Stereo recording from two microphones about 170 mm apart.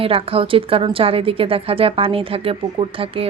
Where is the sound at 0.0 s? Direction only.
35° right (ahead or behind).